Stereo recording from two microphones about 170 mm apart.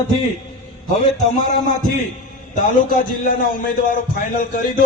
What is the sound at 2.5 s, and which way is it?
A man's voice, 55° left (ahead or behind).